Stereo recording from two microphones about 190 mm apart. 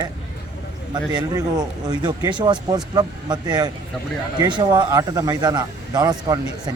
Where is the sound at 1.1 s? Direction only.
20° right (ahead or behind).